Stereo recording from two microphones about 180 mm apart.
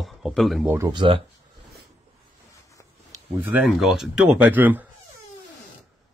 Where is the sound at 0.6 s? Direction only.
20° right (ahead or behind).